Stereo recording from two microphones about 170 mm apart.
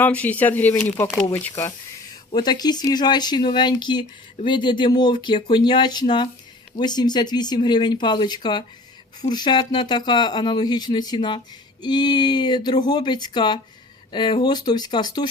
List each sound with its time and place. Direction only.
0.0 s speech: 10° left (ahead or behind)
2.3 s speech: 25° left (ahead or behind)